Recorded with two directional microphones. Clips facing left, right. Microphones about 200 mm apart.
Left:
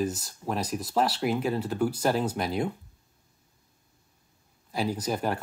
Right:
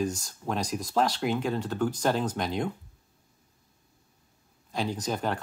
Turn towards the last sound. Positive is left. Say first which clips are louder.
# left 1 dB
turn(degrees=10)  # may be behind; listen again after turning